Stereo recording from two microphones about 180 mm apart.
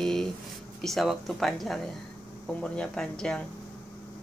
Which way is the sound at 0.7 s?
Centre (ahead or behind).